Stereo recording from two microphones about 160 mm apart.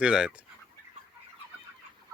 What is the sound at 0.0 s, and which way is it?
Speech, 5° right (ahead or behind).